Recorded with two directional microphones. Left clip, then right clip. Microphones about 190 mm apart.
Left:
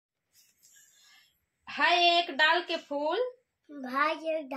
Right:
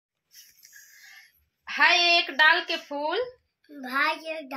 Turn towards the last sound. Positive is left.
turn(degrees=5)  # may be behind; listen again after turning